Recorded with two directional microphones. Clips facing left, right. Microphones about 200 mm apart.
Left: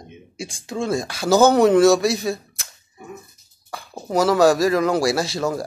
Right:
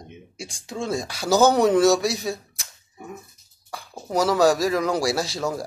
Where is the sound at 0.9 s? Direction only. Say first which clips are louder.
Left 3 dB; centre (ahead or behind).